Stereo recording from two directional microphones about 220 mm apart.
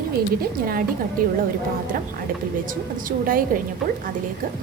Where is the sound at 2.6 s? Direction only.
40° right (ahead or behind).